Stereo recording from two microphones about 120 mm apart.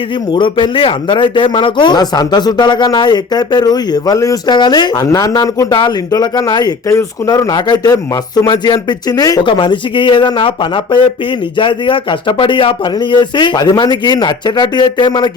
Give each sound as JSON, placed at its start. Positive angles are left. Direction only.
{"t": 0.3, "sound": "speech", "side_deg": 45}
{"t": 9.5, "sound": "speech", "side_deg": 40}